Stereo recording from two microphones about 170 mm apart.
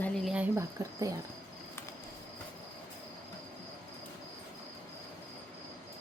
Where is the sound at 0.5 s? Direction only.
20° right (ahead or behind).